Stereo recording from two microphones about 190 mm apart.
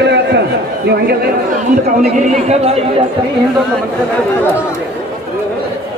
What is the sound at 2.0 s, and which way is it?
Speech, 35° right (ahead or behind).